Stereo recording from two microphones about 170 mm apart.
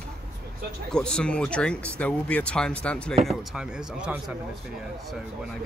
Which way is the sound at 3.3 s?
5° right (ahead or behind).